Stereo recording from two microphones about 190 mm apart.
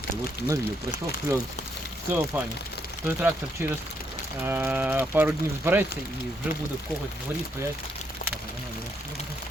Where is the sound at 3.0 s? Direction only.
10° right (ahead or behind).